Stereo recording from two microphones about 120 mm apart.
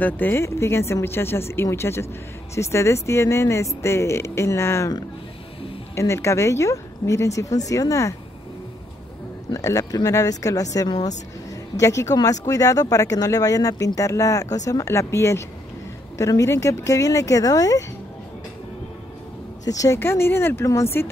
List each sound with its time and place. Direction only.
0.0 s speech: 15° left (ahead or behind)
5.9 s speech: 25° left (ahead or behind)
9.5 s speech: 25° left (ahead or behind)
19.6 s speech: 30° left (ahead or behind)